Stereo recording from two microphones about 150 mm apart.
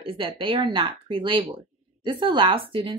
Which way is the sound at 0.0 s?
35° right (ahead or behind).